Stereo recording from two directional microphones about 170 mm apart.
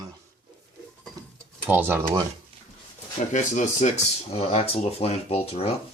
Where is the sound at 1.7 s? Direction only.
15° right (ahead or behind).